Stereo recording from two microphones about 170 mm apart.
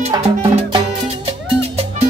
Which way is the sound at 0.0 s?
30° right (ahead or behind).